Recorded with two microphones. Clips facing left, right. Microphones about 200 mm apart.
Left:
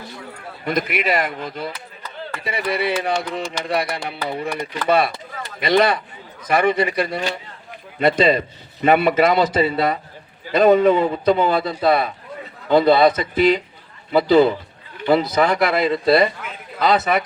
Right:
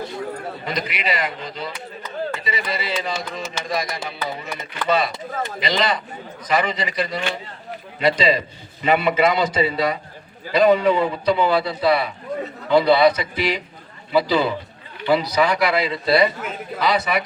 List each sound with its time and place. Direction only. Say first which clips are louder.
0.6 s a man's voice: left 8 dB; 55° left (ahead or behind)